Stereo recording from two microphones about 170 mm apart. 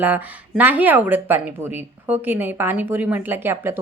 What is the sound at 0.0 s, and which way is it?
Speech, 10° right (ahead or behind).